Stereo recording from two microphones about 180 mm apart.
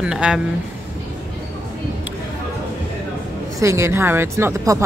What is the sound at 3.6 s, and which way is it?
A woman's voice, 15° right (ahead or behind).